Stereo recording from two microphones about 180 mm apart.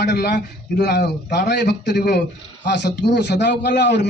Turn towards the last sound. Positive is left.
turn(degrees=75)  # may be behind; listen again after turning